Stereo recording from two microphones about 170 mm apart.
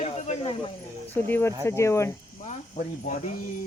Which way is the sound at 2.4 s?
50° left (ahead or behind).